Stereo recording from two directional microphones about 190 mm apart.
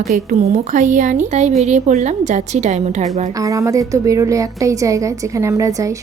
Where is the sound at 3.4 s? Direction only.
15° right (ahead or behind).